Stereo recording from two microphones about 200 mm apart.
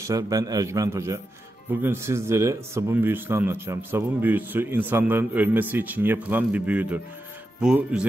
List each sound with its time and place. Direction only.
0.0 s speech: 15° right (ahead or behind)